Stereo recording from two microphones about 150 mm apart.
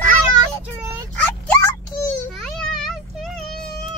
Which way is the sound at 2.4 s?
Centre (ahead or behind).